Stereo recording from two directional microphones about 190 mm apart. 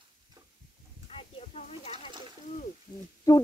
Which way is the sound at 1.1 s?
30° left (ahead or behind).